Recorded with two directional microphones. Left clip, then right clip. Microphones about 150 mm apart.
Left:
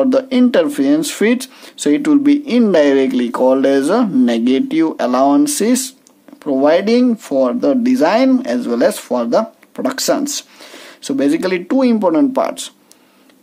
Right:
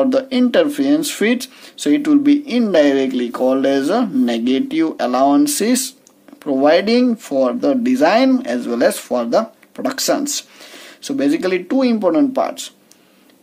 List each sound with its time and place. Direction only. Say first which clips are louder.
0.0 s speech: left 2 dB; 30° left (ahead or behind)